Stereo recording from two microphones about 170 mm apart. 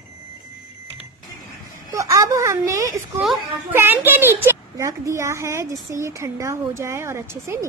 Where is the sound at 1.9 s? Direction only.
20° right (ahead or behind).